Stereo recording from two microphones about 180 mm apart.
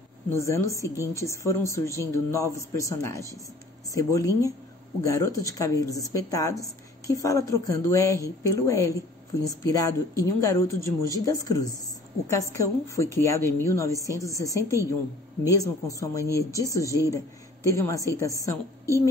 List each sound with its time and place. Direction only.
0.3 s a man's voice: 15° left (ahead or behind)